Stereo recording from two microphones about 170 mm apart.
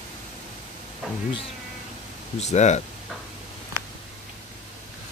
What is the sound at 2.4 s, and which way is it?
Speech, 40° left (ahead or behind).